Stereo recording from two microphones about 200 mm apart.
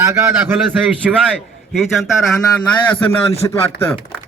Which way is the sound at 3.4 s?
15° left (ahead or behind).